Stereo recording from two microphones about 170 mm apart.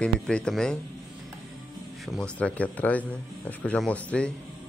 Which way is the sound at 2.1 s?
5° left (ahead or behind).